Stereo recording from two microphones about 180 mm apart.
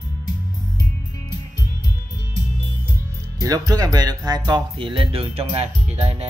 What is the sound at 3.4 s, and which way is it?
Speech, 20° right (ahead or behind).